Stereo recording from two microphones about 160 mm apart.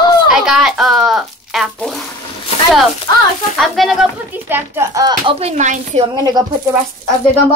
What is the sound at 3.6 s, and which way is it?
A child's voice, centre (ahead or behind).